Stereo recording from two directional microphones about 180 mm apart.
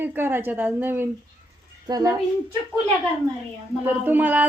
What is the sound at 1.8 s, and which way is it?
Speech, 20° right (ahead or behind).